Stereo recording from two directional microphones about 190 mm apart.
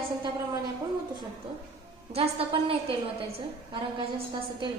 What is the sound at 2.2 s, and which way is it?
Speech, 30° right (ahead or behind).